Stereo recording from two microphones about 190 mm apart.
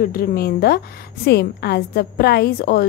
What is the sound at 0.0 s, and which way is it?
A woman's voice, 50° left (ahead or behind).